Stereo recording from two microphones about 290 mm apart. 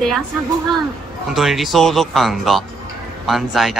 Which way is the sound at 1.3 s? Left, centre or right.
Centre.